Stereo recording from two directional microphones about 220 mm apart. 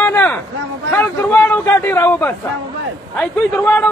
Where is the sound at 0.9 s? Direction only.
10° left (ahead or behind).